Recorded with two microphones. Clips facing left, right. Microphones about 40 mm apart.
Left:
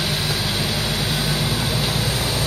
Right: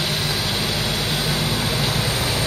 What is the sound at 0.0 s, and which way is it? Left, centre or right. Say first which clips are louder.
Vehicle: even; centre.